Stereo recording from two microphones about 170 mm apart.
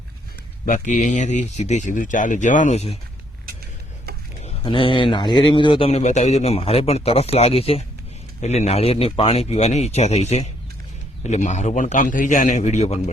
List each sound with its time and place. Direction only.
0.6 s speech: 50° left (ahead or behind)
4.4 s a man's voice: 30° left (ahead or behind)